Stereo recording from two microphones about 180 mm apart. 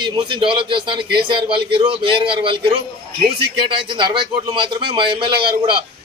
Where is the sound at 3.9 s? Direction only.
25° right (ahead or behind).